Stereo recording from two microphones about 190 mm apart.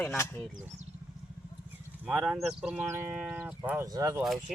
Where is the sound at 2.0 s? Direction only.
Centre (ahead or behind).